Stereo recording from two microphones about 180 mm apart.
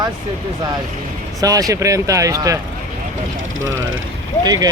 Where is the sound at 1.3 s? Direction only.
20° right (ahead or behind).